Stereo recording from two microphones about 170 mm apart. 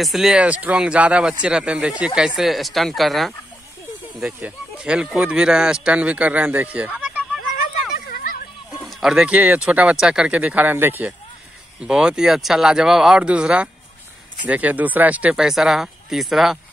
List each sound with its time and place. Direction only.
0.0 s speech: centre (ahead or behind)
8.1 s a sound: 55° left (ahead or behind)
8.8 s speech: centre (ahead or behind)